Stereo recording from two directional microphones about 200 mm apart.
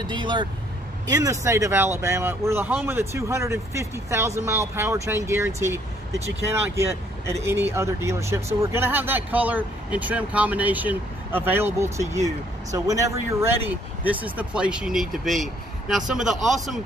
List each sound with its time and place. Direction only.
0.0 s speech: 25° right (ahead or behind); by 16.8 s centre (ahead or behind)